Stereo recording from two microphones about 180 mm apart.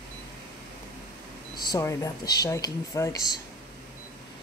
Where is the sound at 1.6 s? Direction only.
20° left (ahead or behind).